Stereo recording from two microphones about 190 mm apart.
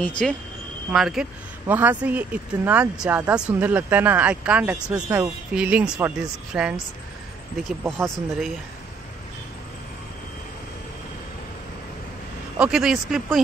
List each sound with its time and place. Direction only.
0.0 s speech: 5° left (ahead or behind)
12.5 s speech: 5° right (ahead or behind)